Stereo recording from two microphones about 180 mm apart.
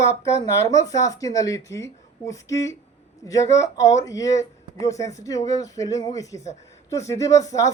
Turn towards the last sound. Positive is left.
turn(degrees=20)  # may be behind; listen again after turning